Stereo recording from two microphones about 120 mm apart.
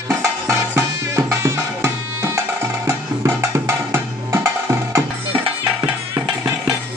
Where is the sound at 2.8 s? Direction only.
20° right (ahead or behind).